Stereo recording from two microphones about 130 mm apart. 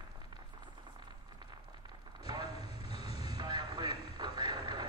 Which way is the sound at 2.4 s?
50° left (ahead or behind).